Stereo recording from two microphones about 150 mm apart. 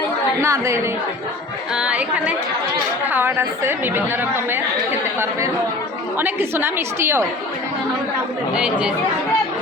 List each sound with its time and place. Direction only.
0.4 s a woman's voice: 20° right (ahead or behind)
1.7 s speech: 5° right (ahead or behind)